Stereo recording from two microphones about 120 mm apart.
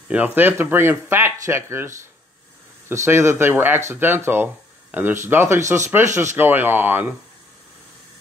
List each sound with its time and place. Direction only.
0.1 s speech: 15° right (ahead or behind)